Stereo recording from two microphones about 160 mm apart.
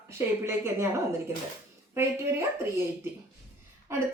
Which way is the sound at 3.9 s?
15° right (ahead or behind).